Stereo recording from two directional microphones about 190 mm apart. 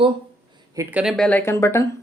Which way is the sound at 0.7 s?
5° right (ahead or behind).